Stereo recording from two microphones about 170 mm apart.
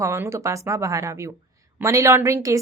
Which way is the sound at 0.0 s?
15° right (ahead or behind).